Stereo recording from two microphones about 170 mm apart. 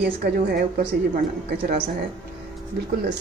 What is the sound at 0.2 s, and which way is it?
A woman's voice, 65° right (ahead or behind).